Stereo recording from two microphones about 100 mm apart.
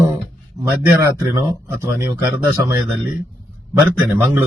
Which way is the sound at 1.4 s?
25° right (ahead or behind).